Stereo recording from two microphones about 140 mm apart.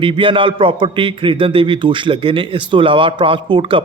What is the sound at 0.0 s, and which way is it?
A man's voice, 40° right (ahead or behind).